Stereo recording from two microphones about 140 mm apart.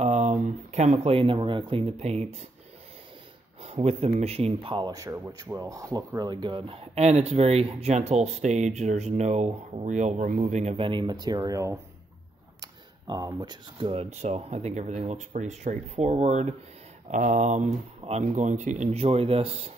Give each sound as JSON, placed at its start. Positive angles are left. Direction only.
{"t": 0.0, "sound": "speech", "side_deg": -55}
{"t": 3.6, "sound": "speech", "side_deg": -50}
{"t": 5.6, "sound": "speech", "side_deg": -25}
{"t": 10.9, "sound": "speech", "side_deg": -30}
{"t": 13.0, "sound": "speech", "side_deg": -30}